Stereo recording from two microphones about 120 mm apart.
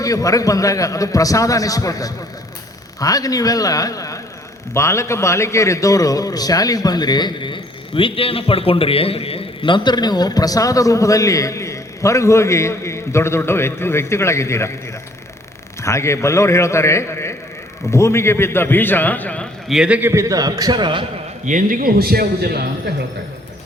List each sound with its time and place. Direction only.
0.0 s a man's voice: 30° left (ahead or behind)
15.8 s a man's voice: 25° left (ahead or behind)
19.6 s a man's voice: 5° right (ahead or behind)
20.0 s a man's voice: 20° right (ahead or behind); by 21.1 s 40° right (ahead or behind)
21.5 s a man's voice: 90° right